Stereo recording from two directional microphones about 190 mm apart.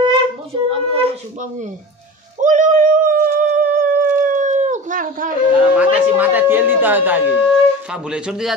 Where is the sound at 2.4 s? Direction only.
40° right (ahead or behind).